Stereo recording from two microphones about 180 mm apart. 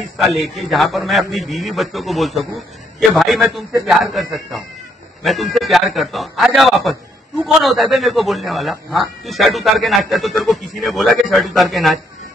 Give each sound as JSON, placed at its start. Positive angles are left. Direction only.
{"t": 0.2, "sound": "speech", "side_deg": 0}